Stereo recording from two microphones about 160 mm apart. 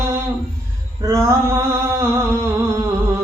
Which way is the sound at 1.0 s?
15° right (ahead or behind).